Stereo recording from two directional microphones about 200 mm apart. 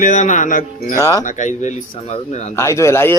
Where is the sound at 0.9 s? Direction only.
15° left (ahead or behind).